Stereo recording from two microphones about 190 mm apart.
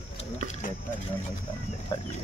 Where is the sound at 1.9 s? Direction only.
25° left (ahead or behind).